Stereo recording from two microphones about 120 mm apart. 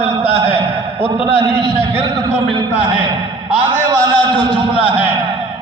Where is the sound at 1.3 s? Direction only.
55° right (ahead or behind).